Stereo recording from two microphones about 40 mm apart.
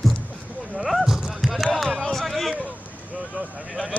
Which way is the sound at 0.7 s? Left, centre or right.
Centre.